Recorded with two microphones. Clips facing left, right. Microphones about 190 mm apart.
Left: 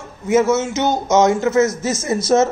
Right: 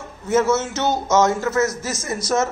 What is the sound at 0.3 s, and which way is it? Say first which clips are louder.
A man's voice: left 3 dB; 10° left (ahead or behind).